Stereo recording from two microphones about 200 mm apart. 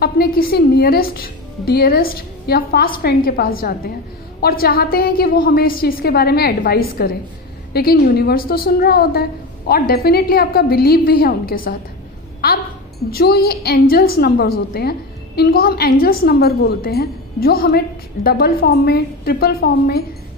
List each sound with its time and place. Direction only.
0.0 s a woman's voice: 50° left (ahead or behind)
13.1 s a woman's voice: 50° left (ahead or behind)